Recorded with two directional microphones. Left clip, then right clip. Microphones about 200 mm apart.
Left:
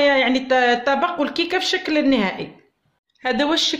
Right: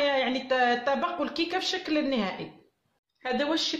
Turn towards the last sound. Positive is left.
turn(degrees=45)  # may be behind; listen again after turning